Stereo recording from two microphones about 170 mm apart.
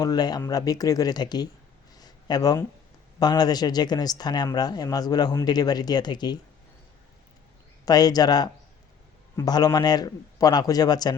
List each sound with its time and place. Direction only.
0.0 s speech: 25° left (ahead or behind)
2.0 s a sound: 25° left (ahead or behind)
3.2 s speech: 25° left (ahead or behind)
7.9 s speech: 20° left (ahead or behind)